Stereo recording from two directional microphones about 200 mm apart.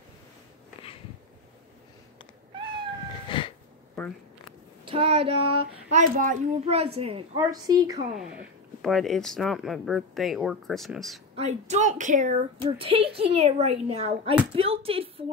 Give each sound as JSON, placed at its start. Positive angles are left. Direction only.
{"t": 2.5, "sound": "cat", "side_deg": -25}
{"t": 3.3, "sound": "a sound", "side_deg": 25}
{"t": 4.0, "sound": "a sound", "side_deg": 0}
{"t": 4.8, "sound": "a child's voice", "side_deg": -30}
{"t": 7.3, "sound": "a child's voice", "side_deg": -20}
{"t": 8.2, "sound": "speech", "side_deg": 0}
{"t": 11.3, "sound": "a woman's voice", "side_deg": -35}
{"t": 12.7, "sound": "a child's voice", "side_deg": -25}